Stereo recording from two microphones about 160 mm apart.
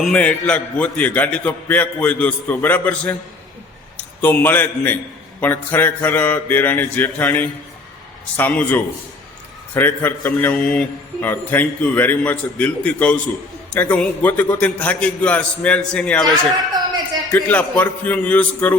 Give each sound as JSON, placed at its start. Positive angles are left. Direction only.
{"t": 0.0, "sound": "a man's voice", "side_deg": 5}